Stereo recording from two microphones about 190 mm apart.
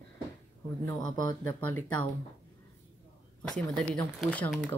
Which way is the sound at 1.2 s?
25° left (ahead or behind).